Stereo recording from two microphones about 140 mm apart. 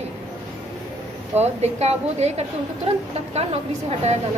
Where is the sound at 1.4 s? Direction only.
50° right (ahead or behind).